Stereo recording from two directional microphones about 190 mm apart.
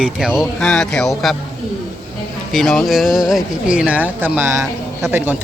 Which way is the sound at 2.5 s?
Centre (ahead or behind).